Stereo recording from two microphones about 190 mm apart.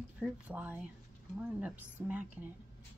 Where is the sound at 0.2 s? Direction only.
10° right (ahead or behind).